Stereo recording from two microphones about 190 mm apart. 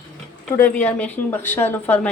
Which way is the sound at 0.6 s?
10° left (ahead or behind).